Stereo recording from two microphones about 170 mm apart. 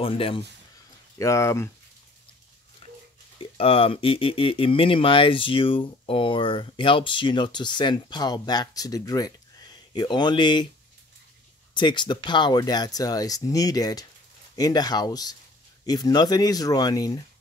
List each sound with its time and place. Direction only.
0.0 s speech: 30° left (ahead or behind)
1.1 s speech: 15° left (ahead or behind)
2.8 s a sound: 35° left (ahead or behind)
3.3 s speech: 35° left (ahead or behind)
11.7 s speech: 25° left (ahead or behind)